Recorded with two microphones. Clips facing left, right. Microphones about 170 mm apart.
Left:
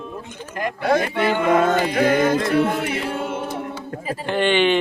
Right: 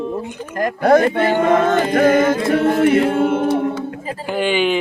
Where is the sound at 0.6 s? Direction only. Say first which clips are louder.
Right 7 dB; 45° right (ahead or behind).